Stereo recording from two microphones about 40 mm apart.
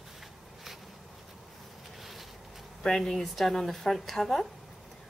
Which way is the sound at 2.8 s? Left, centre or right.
Centre.